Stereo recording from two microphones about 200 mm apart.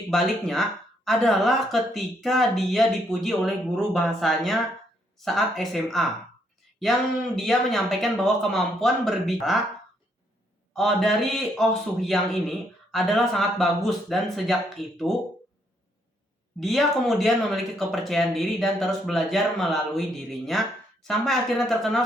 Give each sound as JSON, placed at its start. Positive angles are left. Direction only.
{"t": 0.1, "sound": "speech", "side_deg": 0}
{"t": 10.8, "sound": "speech", "side_deg": 0}
{"t": 16.6, "sound": "speech", "side_deg": 0}